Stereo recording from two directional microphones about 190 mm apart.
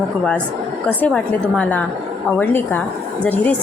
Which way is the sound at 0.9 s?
5° left (ahead or behind).